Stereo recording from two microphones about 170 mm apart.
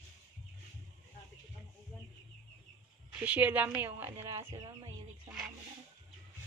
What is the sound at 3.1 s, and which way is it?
Speech, 10° right (ahead or behind).